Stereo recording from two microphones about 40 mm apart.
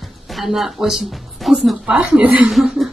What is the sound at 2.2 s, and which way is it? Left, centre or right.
Speech, right.